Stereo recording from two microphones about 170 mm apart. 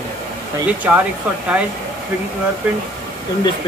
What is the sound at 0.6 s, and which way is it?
Speech, 10° right (ahead or behind).